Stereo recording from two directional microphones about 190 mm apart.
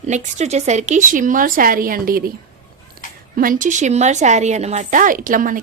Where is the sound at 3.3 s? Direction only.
45° right (ahead or behind).